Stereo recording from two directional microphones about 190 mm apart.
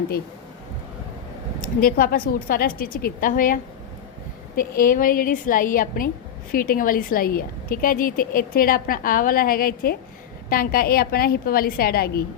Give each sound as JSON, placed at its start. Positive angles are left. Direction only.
{"t": 1.8, "sound": "a woman's voice", "side_deg": 50}